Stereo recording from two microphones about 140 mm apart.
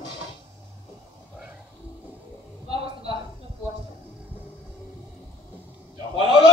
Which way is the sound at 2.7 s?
40° right (ahead or behind).